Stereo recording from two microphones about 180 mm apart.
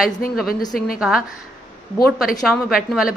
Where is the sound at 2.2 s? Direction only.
Centre (ahead or behind).